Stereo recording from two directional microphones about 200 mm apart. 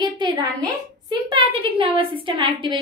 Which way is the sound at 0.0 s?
20° right (ahead or behind).